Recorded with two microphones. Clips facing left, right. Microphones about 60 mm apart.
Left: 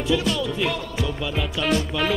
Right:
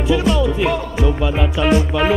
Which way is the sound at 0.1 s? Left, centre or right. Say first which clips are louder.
Right 7 dB; centre.